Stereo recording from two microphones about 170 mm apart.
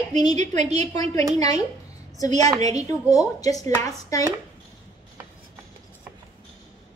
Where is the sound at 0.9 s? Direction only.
20° left (ahead or behind).